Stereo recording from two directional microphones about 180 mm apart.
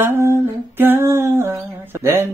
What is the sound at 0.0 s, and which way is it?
Speech, 10° right (ahead or behind).